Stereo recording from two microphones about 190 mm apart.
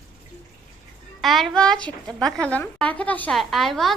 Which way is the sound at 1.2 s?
Centre (ahead or behind).